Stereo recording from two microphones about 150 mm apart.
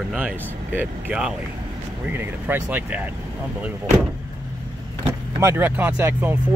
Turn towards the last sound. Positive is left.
turn(degrees=-15)  # may be behind; listen again after turning